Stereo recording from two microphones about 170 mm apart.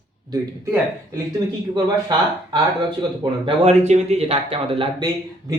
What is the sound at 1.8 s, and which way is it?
Speech, 25° right (ahead or behind).